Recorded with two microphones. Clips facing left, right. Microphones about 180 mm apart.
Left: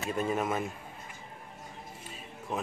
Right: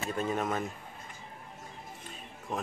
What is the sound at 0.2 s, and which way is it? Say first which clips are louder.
Speech: left 1 dB; 5° left (ahead or behind).